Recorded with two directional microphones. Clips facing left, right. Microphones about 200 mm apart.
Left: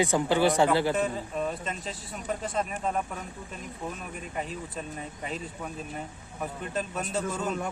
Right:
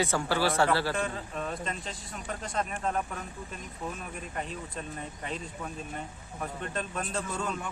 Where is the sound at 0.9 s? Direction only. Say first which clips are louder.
Left 4 dB; 5° left (ahead or behind).